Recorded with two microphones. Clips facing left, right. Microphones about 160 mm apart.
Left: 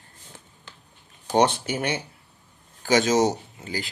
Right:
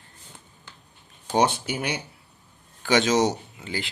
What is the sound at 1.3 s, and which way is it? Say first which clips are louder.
Speech: left 2 dB; 50° left (ahead or behind).